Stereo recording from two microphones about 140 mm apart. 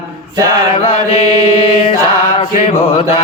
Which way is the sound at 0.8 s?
45° left (ahead or behind).